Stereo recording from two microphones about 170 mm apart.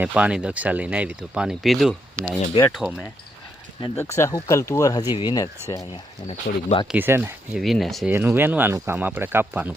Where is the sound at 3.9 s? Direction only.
15° left (ahead or behind).